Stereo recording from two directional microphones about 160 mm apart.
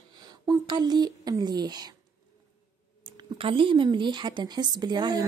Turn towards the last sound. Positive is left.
turn(degrees=-25)  # may be behind; listen again after turning